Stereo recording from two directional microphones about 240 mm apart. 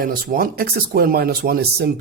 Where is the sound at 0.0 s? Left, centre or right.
Right.